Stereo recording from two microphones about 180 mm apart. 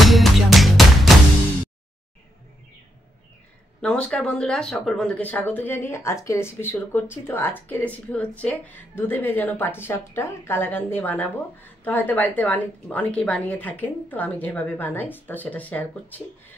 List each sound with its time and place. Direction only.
0.0 s music: centre (ahead or behind)
3.8 s speech: 5° left (ahead or behind)